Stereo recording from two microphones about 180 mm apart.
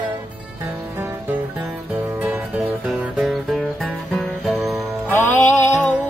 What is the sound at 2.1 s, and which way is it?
Music, 10° right (ahead or behind).